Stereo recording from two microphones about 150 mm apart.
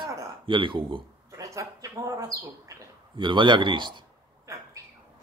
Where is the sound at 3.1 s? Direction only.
30° right (ahead or behind).